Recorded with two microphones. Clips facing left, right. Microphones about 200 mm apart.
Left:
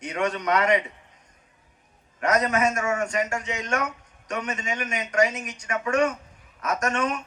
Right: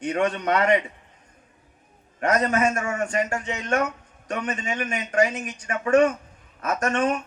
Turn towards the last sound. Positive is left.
turn(degrees=-30)  # may be behind; listen again after turning